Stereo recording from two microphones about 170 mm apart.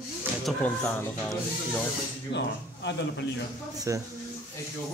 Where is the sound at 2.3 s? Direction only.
90° left.